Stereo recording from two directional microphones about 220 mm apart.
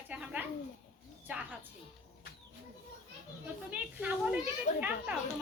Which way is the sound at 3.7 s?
5° right (ahead or behind).